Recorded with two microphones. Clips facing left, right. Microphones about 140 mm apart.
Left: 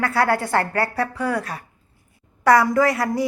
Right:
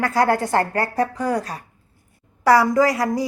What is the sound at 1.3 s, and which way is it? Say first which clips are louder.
Speech: right 2 dB; 40° right (ahead or behind).